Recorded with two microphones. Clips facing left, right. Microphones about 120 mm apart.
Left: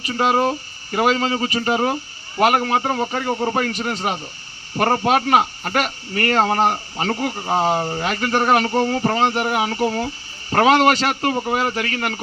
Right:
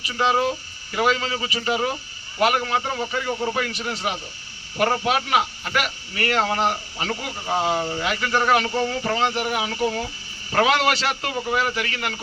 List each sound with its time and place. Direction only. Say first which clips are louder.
0.1 s a man's voice: left 3 dB; 40° left (ahead or behind)